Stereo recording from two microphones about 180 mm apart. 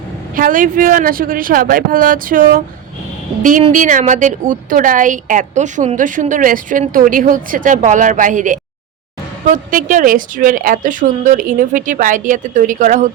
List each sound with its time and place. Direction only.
0.3 s a woman's voice: 50° right (ahead or behind)
3.7 s a woman's voice: 45° right (ahead or behind)